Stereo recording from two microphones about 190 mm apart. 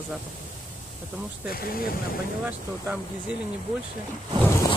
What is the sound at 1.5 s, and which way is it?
Speech, 50° left (ahead or behind).